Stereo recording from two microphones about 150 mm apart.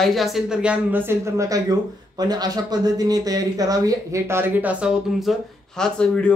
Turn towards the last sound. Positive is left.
turn(degrees=5)  # may be behind; listen again after turning